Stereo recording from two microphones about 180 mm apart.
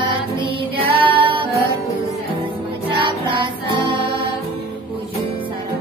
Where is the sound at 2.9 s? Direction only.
25° right (ahead or behind).